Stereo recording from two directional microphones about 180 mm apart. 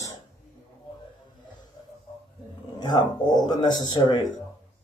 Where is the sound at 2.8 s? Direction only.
25° left (ahead or behind).